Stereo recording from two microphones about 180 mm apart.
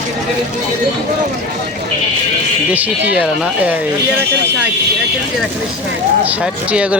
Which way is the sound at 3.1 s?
5° right (ahead or behind).